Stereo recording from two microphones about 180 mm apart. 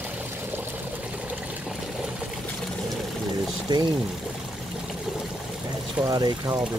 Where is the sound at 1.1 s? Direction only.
10° right (ahead or behind).